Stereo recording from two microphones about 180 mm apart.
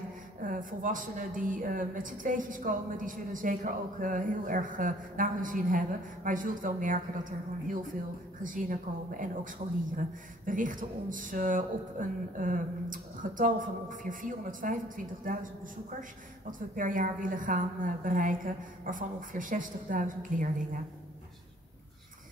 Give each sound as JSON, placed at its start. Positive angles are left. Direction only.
{"t": 0.4, "sound": "speech", "side_deg": -50}